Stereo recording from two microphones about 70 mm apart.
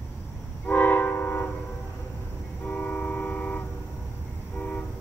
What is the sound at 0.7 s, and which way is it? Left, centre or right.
Train, left.